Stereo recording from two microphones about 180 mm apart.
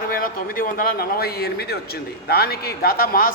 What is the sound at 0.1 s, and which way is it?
Speech, 50° left (ahead or behind).